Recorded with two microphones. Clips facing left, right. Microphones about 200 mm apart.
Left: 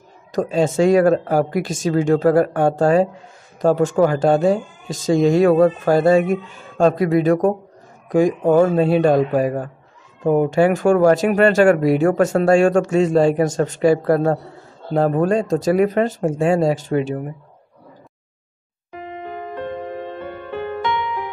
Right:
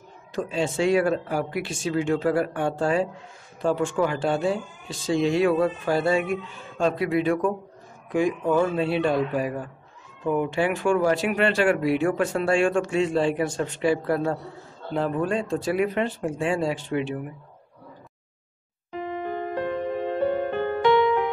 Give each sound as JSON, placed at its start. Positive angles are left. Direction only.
{"t": 0.3, "sound": "speech", "side_deg": 40}
{"t": 20.2, "sound": "music", "side_deg": -55}